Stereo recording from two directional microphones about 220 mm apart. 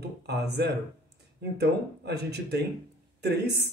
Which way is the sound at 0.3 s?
50° right (ahead or behind).